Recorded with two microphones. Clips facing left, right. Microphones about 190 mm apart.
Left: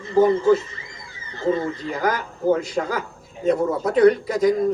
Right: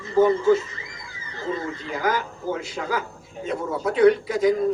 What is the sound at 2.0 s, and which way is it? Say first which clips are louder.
A man's voice: left 4 dB; 45° left (ahead or behind).